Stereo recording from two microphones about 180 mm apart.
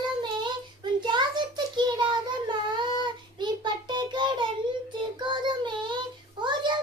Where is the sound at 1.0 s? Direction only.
25° right (ahead or behind).